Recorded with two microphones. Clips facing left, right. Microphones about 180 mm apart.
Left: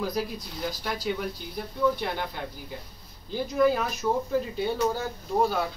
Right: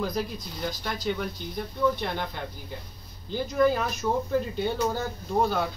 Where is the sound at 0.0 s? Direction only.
5° left (ahead or behind).